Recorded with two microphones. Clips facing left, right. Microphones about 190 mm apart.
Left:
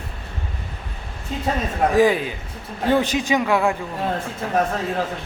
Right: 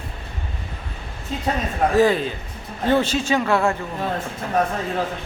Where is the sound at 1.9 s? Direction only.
15° left (ahead or behind).